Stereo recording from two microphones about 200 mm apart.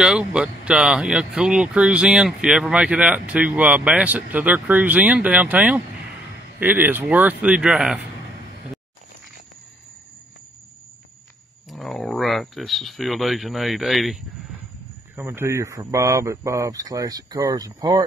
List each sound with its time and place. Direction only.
0.0 s speech: 5° right (ahead or behind)
11.7 s speech: centre (ahead or behind)
15.1 s speech: 10° right (ahead or behind)